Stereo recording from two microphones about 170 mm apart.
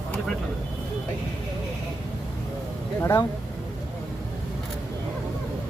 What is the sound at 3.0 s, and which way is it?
Speech, 15° left (ahead or behind).